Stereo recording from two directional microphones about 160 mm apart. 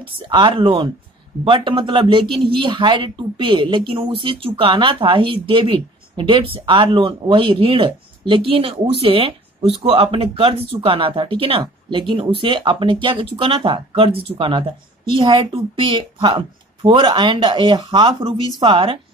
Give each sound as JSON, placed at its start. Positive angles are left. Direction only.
{"t": 0.0, "sound": "speech", "side_deg": -30}